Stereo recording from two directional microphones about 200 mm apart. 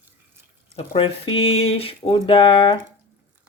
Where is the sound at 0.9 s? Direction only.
25° left (ahead or behind).